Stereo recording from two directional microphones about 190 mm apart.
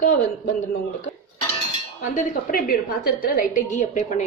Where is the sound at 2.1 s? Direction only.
50° left (ahead or behind).